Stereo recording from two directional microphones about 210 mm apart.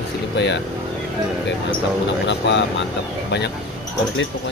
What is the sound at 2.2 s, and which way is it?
Speech, 60° left (ahead or behind).